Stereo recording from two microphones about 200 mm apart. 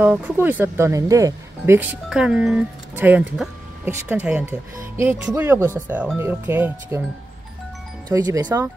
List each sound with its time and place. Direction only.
0.0 s speech: 10° right (ahead or behind)
8.1 s speech: 20° right (ahead or behind)